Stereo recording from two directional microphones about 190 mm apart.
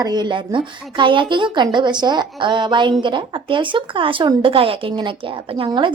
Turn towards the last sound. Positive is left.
turn(degrees=-25)  # may be behind; listen again after turning